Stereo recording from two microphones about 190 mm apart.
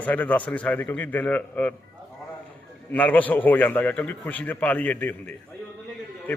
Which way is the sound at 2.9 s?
10° left (ahead or behind).